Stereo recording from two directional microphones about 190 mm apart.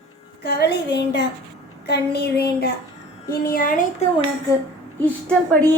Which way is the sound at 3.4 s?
50° left (ahead or behind).